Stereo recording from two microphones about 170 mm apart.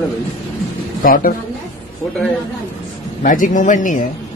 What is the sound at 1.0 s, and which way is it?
Speech, 55° left (ahead or behind).